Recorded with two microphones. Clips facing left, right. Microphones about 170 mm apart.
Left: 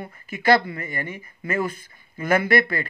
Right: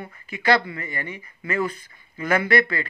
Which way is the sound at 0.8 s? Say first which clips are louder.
Left 1 dB; 45° left (ahead or behind).